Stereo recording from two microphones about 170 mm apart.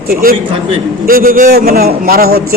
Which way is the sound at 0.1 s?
60° right (ahead or behind).